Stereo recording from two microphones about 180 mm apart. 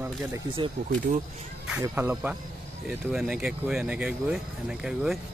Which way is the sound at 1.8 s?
10° right (ahead or behind).